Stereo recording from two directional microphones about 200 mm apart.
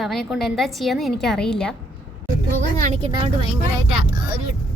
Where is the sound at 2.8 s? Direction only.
35° right (ahead or behind).